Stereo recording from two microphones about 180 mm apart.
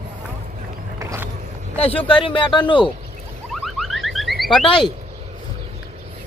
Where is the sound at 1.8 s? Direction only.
30° left (ahead or behind).